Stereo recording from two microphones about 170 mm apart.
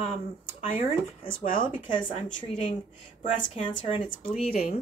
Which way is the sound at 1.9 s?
30° left (ahead or behind).